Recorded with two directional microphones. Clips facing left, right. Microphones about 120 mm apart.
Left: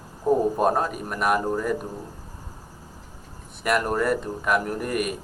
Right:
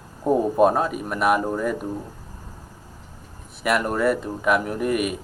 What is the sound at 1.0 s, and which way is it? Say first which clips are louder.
Speech: right 4 dB; 5° right (ahead or behind).